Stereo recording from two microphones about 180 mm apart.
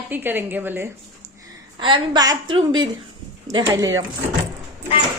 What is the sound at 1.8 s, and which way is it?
A woman's voice, 25° right (ahead or behind).